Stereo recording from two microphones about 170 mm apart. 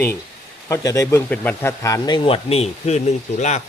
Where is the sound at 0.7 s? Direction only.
20° left (ahead or behind).